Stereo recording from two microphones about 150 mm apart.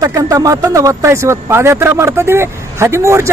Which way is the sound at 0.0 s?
20° right (ahead or behind).